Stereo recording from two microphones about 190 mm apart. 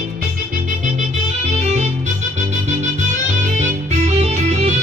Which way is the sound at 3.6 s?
35° right (ahead or behind).